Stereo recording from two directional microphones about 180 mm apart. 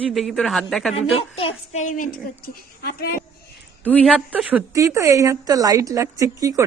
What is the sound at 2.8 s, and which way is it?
Speech, 60° left (ahead or behind).